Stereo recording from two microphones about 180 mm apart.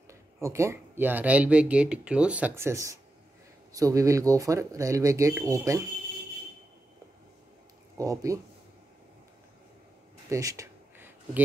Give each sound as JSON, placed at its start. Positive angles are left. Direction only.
{"t": 0.4, "sound": "speech", "side_deg": -15}
{"t": 8.0, "sound": "speech", "side_deg": -20}
{"t": 10.3, "sound": "a sound", "side_deg": -20}